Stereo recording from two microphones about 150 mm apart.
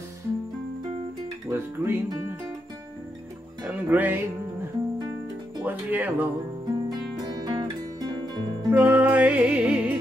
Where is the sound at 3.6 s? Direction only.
10° right (ahead or behind).